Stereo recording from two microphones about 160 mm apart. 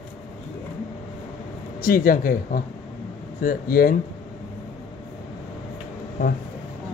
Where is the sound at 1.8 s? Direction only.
60° left (ahead or behind).